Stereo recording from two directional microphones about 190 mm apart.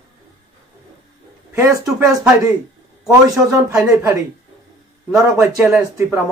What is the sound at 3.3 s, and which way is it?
Speech, 15° right (ahead or behind).